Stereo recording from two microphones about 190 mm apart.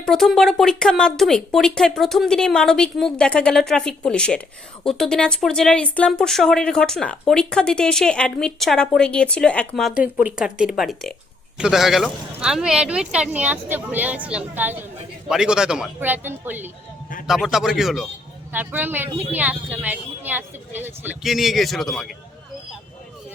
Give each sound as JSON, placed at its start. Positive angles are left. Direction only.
{"t": 0.0, "sound": "speech", "side_deg": 0}